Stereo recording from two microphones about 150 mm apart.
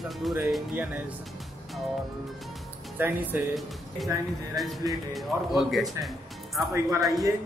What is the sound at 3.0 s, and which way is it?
Speech, 15° right (ahead or behind).